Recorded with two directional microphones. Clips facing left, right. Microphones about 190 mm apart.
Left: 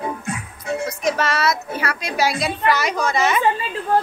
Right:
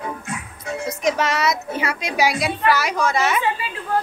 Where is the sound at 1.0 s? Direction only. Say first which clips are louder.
Right 1 dB; 15° right (ahead or behind).